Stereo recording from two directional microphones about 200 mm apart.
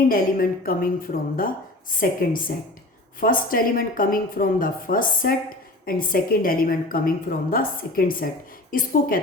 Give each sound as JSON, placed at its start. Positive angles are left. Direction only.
{"t": 0.1, "sound": "a woman's voice", "side_deg": 45}